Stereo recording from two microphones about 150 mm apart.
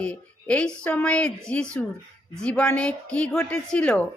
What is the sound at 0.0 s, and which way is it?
A woman's voice, 10° left (ahead or behind).